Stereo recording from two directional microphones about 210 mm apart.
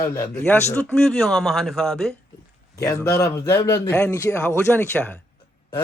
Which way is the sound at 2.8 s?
15° left (ahead or behind).